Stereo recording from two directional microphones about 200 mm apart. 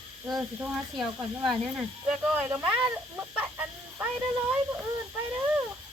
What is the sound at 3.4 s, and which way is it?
Chicken, 5° right (ahead or behind).